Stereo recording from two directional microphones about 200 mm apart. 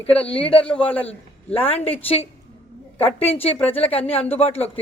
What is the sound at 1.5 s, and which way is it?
Speech, 30° left (ahead or behind).